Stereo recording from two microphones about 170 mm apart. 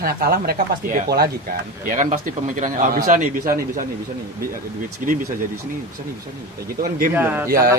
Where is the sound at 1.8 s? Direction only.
50° right (ahead or behind).